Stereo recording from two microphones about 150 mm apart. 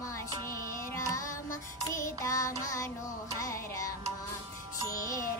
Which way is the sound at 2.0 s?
20° left (ahead or behind).